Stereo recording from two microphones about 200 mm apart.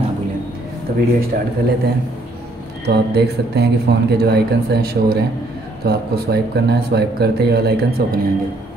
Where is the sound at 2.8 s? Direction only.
55° right (ahead or behind).